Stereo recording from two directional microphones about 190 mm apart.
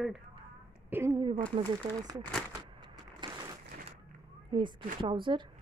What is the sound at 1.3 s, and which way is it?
Speech, 5° left (ahead or behind).